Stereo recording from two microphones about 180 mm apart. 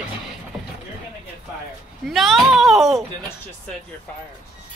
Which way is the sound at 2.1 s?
Centre (ahead or behind).